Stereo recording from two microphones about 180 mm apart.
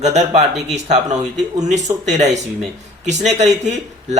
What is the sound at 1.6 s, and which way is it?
Speech, 40° right (ahead or behind).